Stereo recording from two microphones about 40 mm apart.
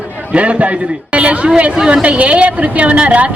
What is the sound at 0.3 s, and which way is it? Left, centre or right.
Speech, right.